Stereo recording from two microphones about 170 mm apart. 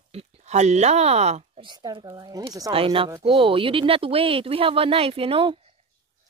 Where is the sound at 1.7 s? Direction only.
25° right (ahead or behind).